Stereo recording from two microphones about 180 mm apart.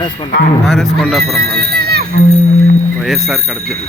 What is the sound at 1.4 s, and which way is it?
Speech, 60° right (ahead or behind).